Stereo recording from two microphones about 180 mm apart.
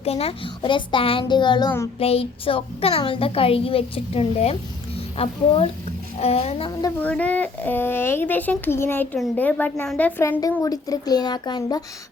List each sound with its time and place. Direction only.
0.0 s a child's voice: 35° left (ahead or behind)
7.0 s a child's voice: 5° left (ahead or behind); by 11.8 s 25° left (ahead or behind)